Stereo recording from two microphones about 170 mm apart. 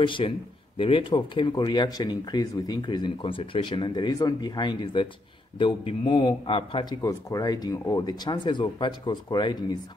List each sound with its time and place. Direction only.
0.0 s speech: 30° left (ahead or behind)